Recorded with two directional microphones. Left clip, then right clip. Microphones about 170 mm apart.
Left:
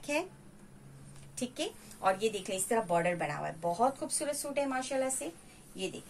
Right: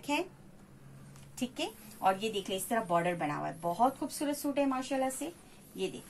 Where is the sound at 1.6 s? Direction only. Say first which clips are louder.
Right 2 dB; 40° left (ahead or behind).